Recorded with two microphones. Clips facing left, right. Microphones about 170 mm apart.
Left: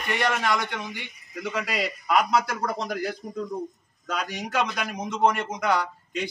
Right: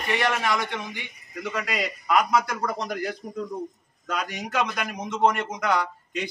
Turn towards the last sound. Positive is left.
turn(degrees=0)  # may be behind; listen again after turning